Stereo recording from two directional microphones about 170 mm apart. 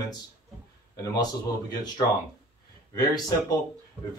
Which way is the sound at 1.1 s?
25° left (ahead or behind).